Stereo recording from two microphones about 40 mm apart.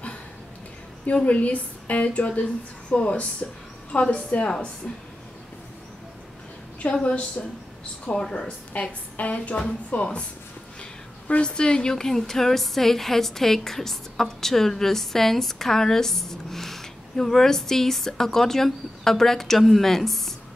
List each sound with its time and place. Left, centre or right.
1.1 s speech: left
4.8 s a woman's voice: centre
6.8 s a woman's voice: left
8.1 s a woman's voice: centre
8.4 s speech: left
10.8 s a sound: left
11.4 s a woman's voice: left